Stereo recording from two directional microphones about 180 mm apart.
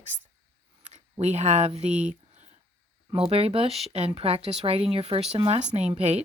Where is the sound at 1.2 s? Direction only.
40° right (ahead or behind).